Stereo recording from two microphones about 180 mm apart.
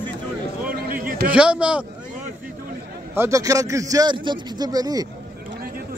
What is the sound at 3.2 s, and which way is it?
A man's voice, 15° right (ahead or behind).